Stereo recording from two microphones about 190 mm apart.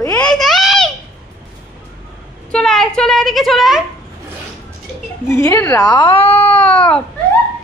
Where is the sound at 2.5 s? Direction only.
Centre (ahead or behind).